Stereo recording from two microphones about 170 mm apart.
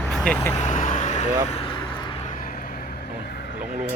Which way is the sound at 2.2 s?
50° left (ahead or behind).